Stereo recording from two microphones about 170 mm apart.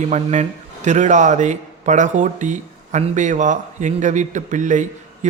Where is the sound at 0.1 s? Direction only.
40° right (ahead or behind).